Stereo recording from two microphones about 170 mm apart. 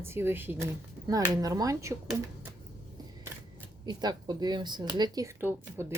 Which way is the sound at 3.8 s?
25° right (ahead or behind).